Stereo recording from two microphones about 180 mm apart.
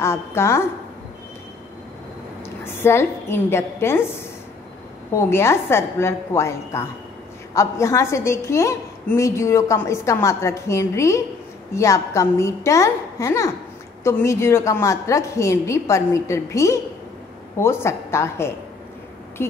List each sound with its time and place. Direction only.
0.0 s a woman's voice: 15° left (ahead or behind)
2.6 s a woman's voice: 15° left (ahead or behind)